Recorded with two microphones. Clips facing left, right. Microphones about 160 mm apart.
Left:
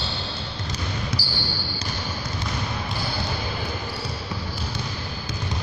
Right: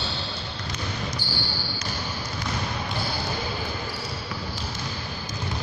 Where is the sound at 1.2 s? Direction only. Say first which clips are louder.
Even; 35° left (ahead or behind).